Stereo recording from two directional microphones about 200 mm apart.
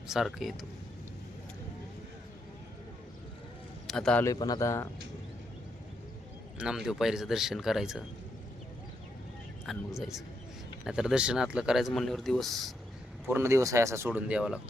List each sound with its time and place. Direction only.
0.1 s speech: centre (ahead or behind)
3.8 s a man's voice: 5° left (ahead or behind)
4.3 s a man's voice: 20° left (ahead or behind)
6.6 s speech: 5° right (ahead or behind)
9.6 s speech: centre (ahead or behind)
13.2 s speech: 10° right (ahead or behind)